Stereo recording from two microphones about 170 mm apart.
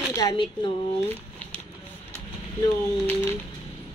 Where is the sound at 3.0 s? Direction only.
10° left (ahead or behind).